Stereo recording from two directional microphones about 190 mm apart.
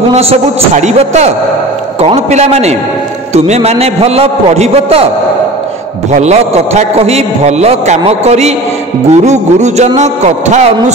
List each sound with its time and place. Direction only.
0.1 s a man's voice: 35° right (ahead or behind)
6.1 s a man's voice: 35° right (ahead or behind)